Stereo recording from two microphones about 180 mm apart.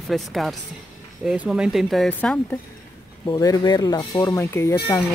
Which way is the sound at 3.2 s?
20° left (ahead or behind).